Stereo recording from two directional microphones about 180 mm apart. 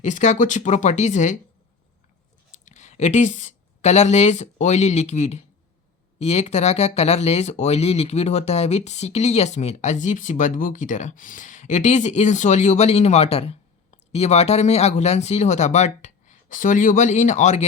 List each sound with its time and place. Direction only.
0.0 s speech: 40° left (ahead or behind)
2.6 s speech: 40° left (ahead or behind)